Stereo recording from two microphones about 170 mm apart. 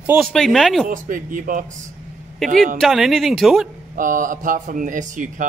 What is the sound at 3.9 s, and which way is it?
Speech, 50° right (ahead or behind).